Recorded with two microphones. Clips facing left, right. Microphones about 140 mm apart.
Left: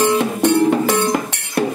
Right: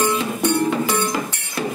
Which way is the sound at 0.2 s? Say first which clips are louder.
Left 5 dB; 80° left.